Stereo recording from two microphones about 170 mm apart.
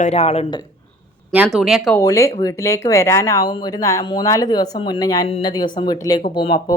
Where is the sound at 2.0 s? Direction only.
20° left (ahead or behind).